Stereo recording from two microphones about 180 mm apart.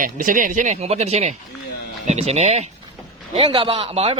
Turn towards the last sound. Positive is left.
turn(degrees=-30)  # may be behind; listen again after turning